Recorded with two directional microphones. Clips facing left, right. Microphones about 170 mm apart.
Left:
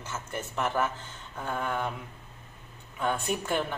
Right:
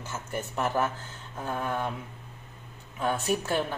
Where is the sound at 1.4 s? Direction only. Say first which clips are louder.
Right 1 dB; 5° right (ahead or behind).